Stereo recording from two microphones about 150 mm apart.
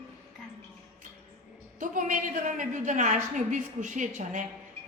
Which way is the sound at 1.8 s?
60° right (ahead or behind).